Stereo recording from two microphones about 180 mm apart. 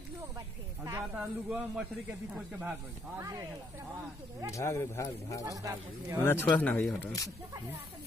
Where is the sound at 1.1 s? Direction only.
5° right (ahead or behind).